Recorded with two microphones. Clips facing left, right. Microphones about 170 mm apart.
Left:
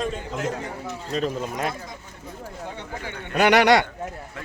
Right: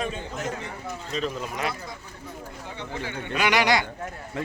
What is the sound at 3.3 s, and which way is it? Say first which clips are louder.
Speech: left 6 dB; 60° left (ahead or behind).